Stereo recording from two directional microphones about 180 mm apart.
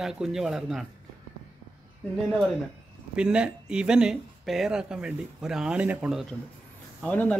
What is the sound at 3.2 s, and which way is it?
A man's voice, 5° right (ahead or behind).